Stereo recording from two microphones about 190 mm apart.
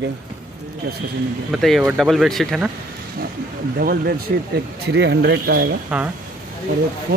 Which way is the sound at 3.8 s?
50° right (ahead or behind).